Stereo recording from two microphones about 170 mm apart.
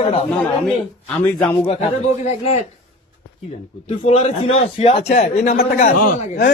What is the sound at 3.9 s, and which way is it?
Speech, 40° left (ahead or behind).